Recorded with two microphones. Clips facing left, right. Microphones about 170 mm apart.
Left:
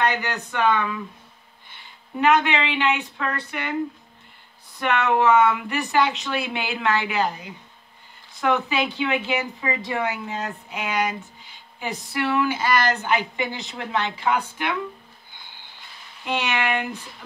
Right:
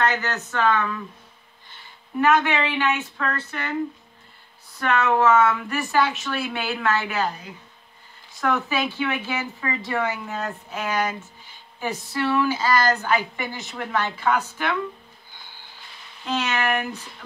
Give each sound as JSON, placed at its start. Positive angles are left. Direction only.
{"t": 0.0, "sound": "speech", "side_deg": 15}
{"t": 2.1, "sound": "speech", "side_deg": 15}
{"t": 4.7, "sound": "speech", "side_deg": 15}
{"t": 16.3, "sound": "speech", "side_deg": 15}